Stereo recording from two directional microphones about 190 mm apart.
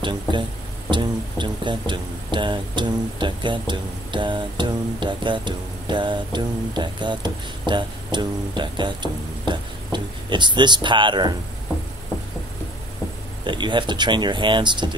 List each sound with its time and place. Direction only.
0.8 s speech: 25° right (ahead or behind)
13.4 s speech: 25° right (ahead or behind)